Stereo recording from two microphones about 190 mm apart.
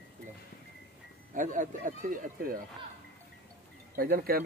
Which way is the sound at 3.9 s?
50° right (ahead or behind).